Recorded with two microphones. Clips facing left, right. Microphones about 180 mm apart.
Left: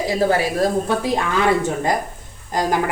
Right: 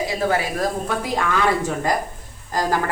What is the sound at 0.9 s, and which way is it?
A woman's voice, 25° left (ahead or behind).